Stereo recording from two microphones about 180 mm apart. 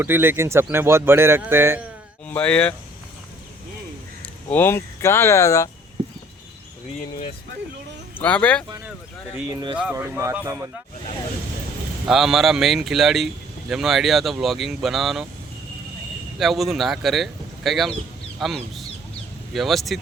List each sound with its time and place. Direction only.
0.0 s speech: 10° right (ahead or behind)
2.2 s speech: 5° left (ahead or behind)
4.5 s speech: 15° left (ahead or behind)
8.2 s speech: 5° left (ahead or behind)
9.9 s speech: 15° right (ahead or behind)
12.0 s speech: centre (ahead or behind)
16.4 s speech: centre (ahead or behind)